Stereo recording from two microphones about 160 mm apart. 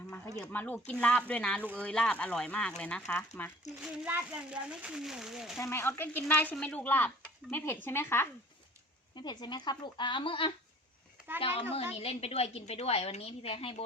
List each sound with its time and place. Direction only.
0.3 s speech: 10° left (ahead or behind)
3.8 s speech: 5° right (ahead or behind)
5.5 s speech: 15° left (ahead or behind)
9.1 s a woman's voice: 25° left (ahead or behind)